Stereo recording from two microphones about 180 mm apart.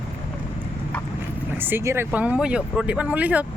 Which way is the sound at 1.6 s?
15° right (ahead or behind).